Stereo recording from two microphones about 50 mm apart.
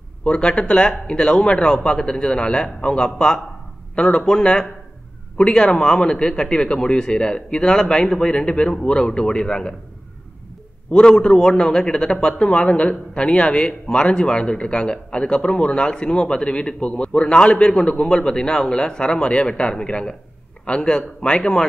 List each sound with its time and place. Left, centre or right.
0.2 s a man's voice: centre
10.9 s a man's voice: centre